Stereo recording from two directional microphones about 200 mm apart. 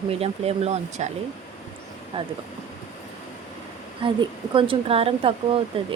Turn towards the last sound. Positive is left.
turn(degrees=-25)  # may be behind; listen again after turning